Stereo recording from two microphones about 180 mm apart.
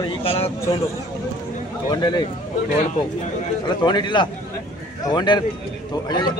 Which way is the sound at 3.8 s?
25° left (ahead or behind).